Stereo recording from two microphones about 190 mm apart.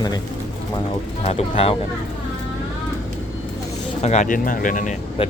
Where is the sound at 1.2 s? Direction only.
30° left (ahead or behind).